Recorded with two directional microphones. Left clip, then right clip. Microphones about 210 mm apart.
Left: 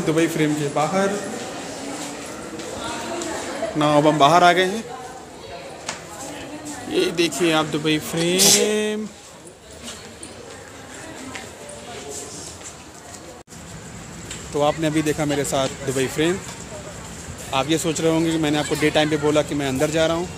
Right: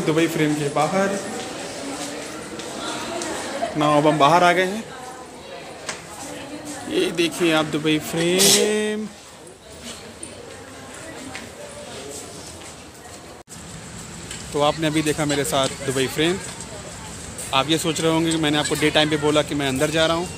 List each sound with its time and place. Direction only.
0.0 s speech: centre (ahead or behind)
3.7 s a man's voice: 10° left (ahead or behind)
6.9 s speech: centre (ahead or behind)
14.5 s speech: centre (ahead or behind)
17.5 s speech: centre (ahead or behind)